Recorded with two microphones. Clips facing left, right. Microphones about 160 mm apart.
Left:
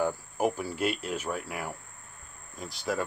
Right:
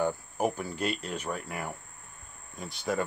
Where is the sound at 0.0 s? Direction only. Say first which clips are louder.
Left 1 dB; 5° left (ahead or behind).